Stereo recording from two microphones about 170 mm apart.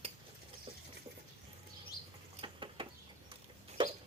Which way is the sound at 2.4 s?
30° right (ahead or behind).